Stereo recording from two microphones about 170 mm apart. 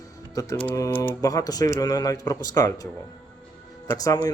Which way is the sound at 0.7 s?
20° left (ahead or behind).